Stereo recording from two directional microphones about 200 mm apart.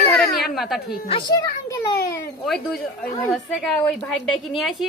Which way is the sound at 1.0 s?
25° left (ahead or behind).